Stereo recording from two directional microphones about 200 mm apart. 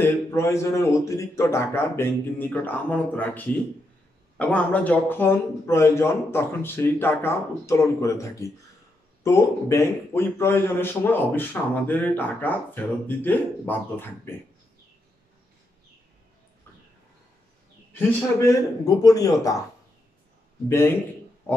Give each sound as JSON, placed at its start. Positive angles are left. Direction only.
{"t": 0.0, "sound": "a man's voice", "side_deg": 10}
{"t": 17.9, "sound": "a man's voice", "side_deg": 10}
{"t": 20.6, "sound": "a man's voice", "side_deg": 10}